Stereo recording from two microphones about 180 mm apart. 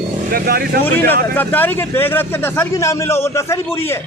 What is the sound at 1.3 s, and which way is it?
Speech, 10° left (ahead or behind).